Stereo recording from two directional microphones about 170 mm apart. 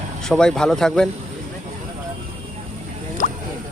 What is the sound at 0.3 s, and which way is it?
Speech, 5° left (ahead or behind).